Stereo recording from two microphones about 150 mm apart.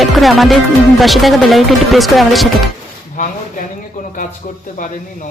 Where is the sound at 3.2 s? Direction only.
60° left (ahead or behind).